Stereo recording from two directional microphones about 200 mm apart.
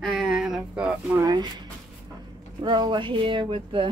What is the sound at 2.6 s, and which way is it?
Speech, 25° right (ahead or behind).